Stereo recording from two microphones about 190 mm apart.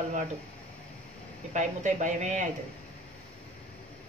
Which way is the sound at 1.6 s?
40° right (ahead or behind).